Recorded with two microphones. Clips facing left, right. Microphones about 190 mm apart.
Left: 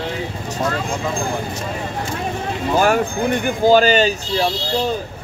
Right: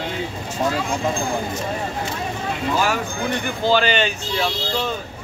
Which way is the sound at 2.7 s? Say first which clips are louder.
Left 8 dB; 50° left (ahead or behind).